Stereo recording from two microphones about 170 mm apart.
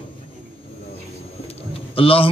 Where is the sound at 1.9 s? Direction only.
35° left (ahead or behind).